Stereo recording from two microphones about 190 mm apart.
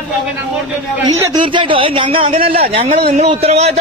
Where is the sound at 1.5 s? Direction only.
25° right (ahead or behind).